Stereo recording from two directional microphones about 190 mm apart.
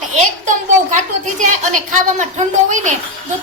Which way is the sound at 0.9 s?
40° right (ahead or behind).